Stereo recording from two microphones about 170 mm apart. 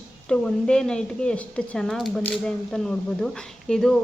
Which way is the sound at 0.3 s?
5° left (ahead or behind).